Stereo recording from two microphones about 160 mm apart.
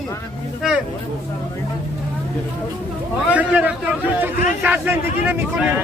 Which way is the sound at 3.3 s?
10° right (ahead or behind).